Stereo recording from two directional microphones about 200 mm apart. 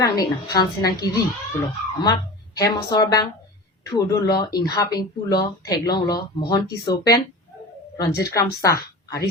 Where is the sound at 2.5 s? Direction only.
15° left (ahead or behind).